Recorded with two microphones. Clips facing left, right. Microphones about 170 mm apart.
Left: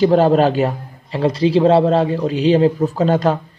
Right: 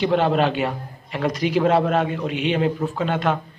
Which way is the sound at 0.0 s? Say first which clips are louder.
Left 6 dB; 40° left (ahead or behind).